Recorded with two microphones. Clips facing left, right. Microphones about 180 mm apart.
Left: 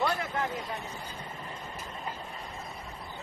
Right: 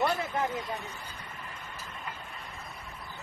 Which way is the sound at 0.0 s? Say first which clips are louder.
Right 1 dB; 20° right (ahead or behind).